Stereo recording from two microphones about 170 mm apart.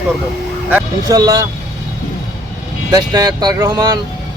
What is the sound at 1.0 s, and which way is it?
Speech, 20° right (ahead or behind).